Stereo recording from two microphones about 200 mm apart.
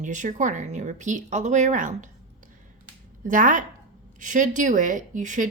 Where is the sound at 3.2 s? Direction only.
40° right (ahead or behind).